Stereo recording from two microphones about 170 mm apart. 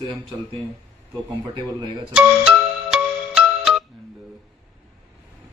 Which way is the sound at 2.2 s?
5° right (ahead or behind).